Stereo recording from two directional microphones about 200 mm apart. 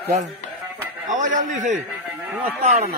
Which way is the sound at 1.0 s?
40° right (ahead or behind).